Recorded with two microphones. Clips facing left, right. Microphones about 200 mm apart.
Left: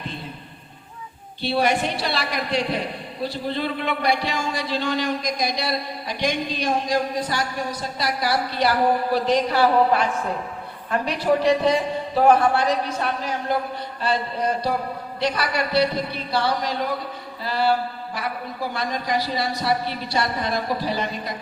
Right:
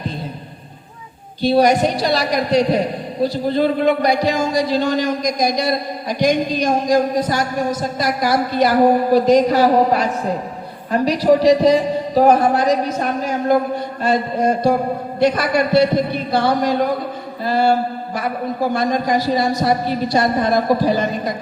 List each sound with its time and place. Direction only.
1.4 s a man's voice: 40° right (ahead or behind)